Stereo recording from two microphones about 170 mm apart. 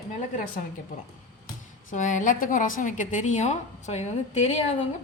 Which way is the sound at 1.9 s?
50° left (ahead or behind).